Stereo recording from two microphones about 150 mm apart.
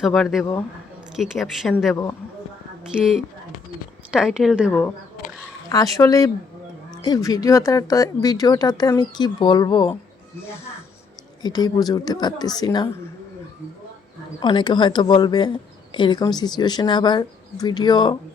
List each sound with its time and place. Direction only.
0.0 s speech: centre (ahead or behind)
3.0 s speech: centre (ahead or behind)
5.6 s speech: 25° left (ahead or behind)
11.4 s speech: 25° left (ahead or behind)
14.4 s speech: 30° left (ahead or behind)